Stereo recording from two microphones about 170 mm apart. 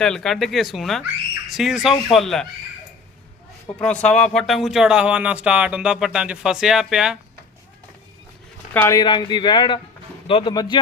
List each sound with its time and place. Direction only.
0.0 s speech: 5° left (ahead or behind)
3.8 s speech: 5° left (ahead or behind)
8.7 s speech: 10° left (ahead or behind)
9.0 s speech: 25° left (ahead or behind)